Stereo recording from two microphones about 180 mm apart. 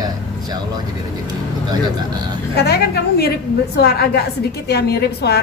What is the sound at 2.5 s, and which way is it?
A woman's voice, 65° left (ahead or behind).